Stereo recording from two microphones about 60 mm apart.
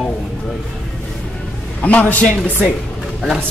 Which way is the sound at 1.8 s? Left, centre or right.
Left.